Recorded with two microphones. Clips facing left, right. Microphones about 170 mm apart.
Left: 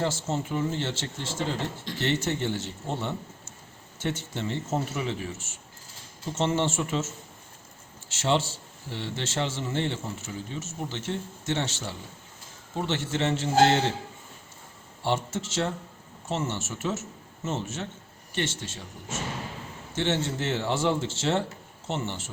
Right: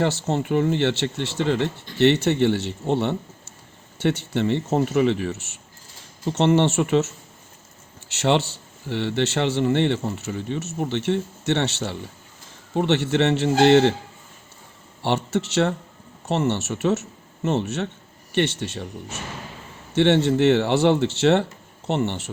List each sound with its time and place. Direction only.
0.0 s a man's voice: 70° right (ahead or behind)
8.1 s a man's voice: 70° right (ahead or behind)
15.0 s a man's voice: 70° right (ahead or behind)
19.9 s a man's voice: 65° right (ahead or behind)